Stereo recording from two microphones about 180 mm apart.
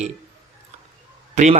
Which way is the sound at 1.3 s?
40° right (ahead or behind).